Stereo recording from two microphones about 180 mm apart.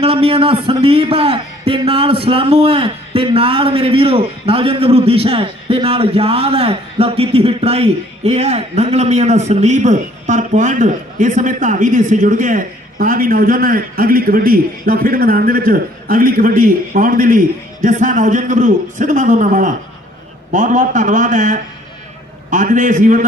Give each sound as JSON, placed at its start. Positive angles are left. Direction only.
{"t": 0.0, "sound": "a man's voice", "side_deg": -30}